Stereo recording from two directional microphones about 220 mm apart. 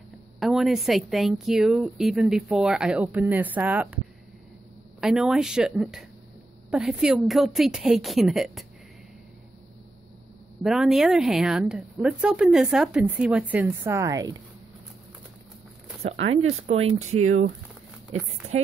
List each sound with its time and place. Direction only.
0.4 s a woman's voice: centre (ahead or behind)
5.0 s a woman's voice: 5° right (ahead or behind)
10.6 s a woman's voice: centre (ahead or behind)
16.0 s speech: 30° right (ahead or behind)